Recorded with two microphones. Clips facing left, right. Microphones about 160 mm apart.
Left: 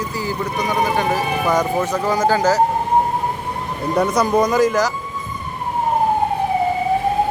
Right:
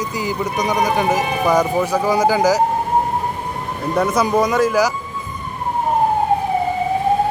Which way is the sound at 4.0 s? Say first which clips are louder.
Even; 5° right (ahead or behind).